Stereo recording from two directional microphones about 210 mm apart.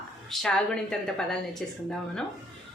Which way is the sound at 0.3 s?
5° left (ahead or behind).